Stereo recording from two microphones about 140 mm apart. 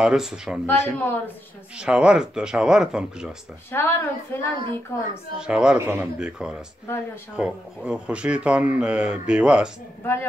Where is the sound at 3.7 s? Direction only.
15° left (ahead or behind).